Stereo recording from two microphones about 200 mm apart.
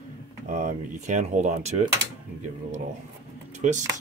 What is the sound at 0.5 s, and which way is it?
Speech, 40° right (ahead or behind).